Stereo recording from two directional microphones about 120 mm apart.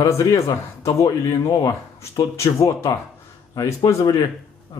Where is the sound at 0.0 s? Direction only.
25° left (ahead or behind).